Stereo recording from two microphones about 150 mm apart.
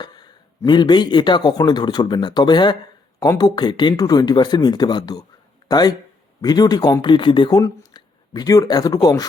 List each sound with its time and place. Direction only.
0.0 s speech: 30° left (ahead or behind)